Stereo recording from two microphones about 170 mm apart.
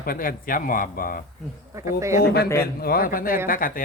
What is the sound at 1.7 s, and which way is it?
Speech, 15° right (ahead or behind).